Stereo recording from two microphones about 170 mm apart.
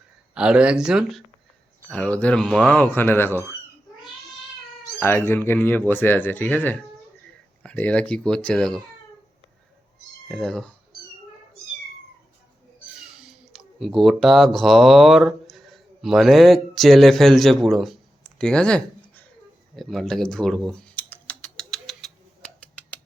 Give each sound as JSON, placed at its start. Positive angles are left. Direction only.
{"t": 0.3, "sound": "speech", "side_deg": -5}
{"t": 1.9, "sound": "speech", "side_deg": 5}
{"t": 4.9, "sound": "speech", "side_deg": 10}
{"t": 10.2, "sound": "speech", "side_deg": 0}
{"t": 13.0, "sound": "speech", "side_deg": -5}
{"t": 19.7, "sound": "typing", "side_deg": 0}